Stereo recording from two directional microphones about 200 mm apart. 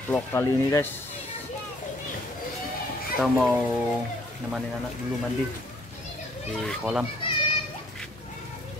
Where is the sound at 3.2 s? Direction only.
Centre (ahead or behind).